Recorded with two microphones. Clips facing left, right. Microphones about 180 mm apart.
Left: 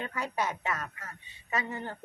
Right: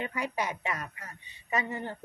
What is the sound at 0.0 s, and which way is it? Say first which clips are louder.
A woman's voice: even; 15° right (ahead or behind).